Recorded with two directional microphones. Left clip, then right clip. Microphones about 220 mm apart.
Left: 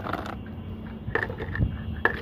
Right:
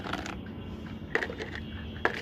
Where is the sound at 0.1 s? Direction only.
20° left (ahead or behind).